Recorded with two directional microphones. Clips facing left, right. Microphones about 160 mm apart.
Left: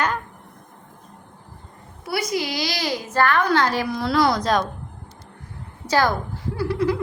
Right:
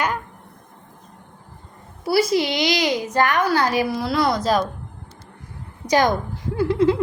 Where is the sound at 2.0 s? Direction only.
30° right (ahead or behind); by 4.6 s centre (ahead or behind).